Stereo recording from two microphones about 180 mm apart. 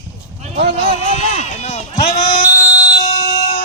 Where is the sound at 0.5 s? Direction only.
35° right (ahead or behind).